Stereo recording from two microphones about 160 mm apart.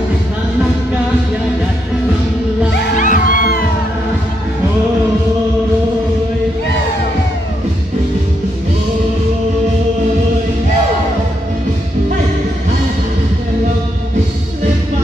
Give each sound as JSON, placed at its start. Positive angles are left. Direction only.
{"t": 3.0, "sound": "music", "side_deg": 55}